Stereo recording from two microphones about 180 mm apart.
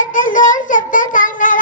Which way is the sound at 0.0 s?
45° left (ahead or behind).